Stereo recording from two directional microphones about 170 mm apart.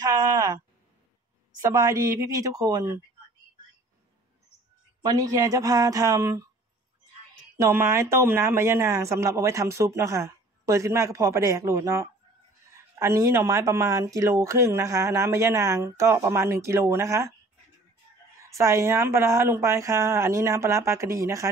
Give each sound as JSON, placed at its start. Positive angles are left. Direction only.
{"t": 0.0, "sound": "speech", "side_deg": -20}
{"t": 1.6, "sound": "a woman's voice", "side_deg": -20}
{"t": 5.0, "sound": "a woman's voice", "side_deg": -20}
{"t": 7.5, "sound": "speech", "side_deg": -15}
{"t": 18.4, "sound": "speech", "side_deg": -15}